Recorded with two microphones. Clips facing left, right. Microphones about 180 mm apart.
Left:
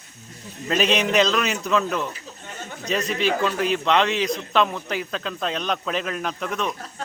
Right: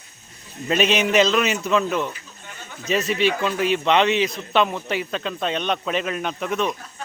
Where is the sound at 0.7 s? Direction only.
Centre (ahead or behind).